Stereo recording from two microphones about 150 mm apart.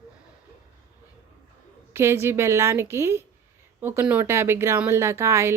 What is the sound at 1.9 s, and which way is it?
Speech, 15° right (ahead or behind).